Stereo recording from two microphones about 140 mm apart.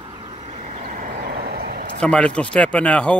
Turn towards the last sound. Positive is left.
turn(degrees=10)  # may be behind; listen again after turning